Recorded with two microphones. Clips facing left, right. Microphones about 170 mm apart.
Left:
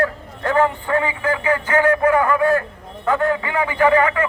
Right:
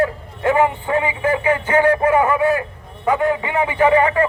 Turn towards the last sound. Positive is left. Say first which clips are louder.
# right 1 dB
turn(degrees=-25)  # may be behind; listen again after turning